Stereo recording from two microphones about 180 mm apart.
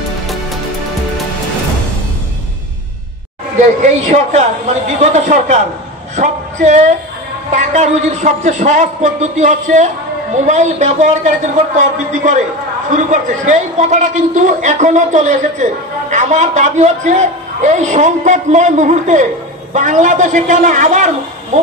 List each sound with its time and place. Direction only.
3.8 s a man's voice: 40° right (ahead or behind)
6.1 s a sound: 40° right (ahead or behind)
7.5 s a man's voice: 40° right (ahead or behind)